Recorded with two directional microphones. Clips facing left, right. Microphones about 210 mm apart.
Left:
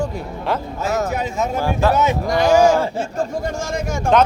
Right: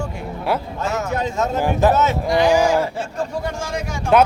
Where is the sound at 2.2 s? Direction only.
45° left (ahead or behind).